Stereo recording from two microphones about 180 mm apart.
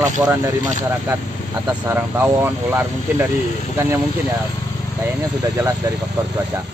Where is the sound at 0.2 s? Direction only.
20° right (ahead or behind).